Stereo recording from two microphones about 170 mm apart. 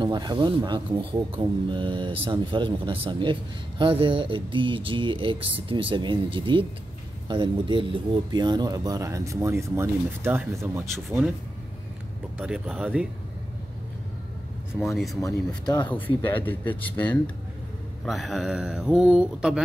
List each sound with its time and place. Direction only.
0.0 s speech: 25° right (ahead or behind)
12.4 s speech: 5° right (ahead or behind)
14.8 s speech: centre (ahead or behind)
15.2 s speech: 25° left (ahead or behind)
16.3 s speech: 10° left (ahead or behind)